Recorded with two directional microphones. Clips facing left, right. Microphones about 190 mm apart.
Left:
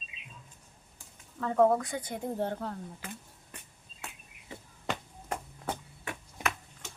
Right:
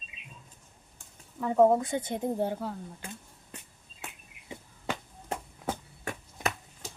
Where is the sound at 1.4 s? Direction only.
15° right (ahead or behind).